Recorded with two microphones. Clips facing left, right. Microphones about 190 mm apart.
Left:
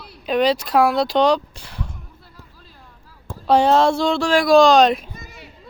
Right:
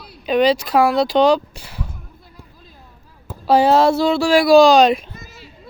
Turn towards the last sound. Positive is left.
turn(degrees=0)  # may be behind; listen again after turning